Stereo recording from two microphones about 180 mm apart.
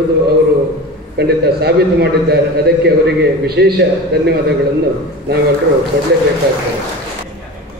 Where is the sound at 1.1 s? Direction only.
65° right (ahead or behind).